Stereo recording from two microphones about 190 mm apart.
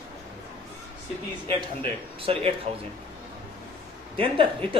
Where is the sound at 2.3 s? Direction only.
30° right (ahead or behind).